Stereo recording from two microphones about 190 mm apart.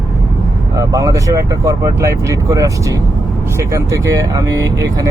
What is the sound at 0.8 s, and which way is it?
Speech, 20° right (ahead or behind).